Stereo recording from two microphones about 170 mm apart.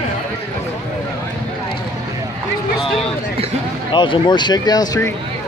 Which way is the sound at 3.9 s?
30° left (ahead or behind).